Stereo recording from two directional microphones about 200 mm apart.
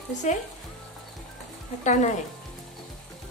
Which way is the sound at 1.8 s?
35° left (ahead or behind).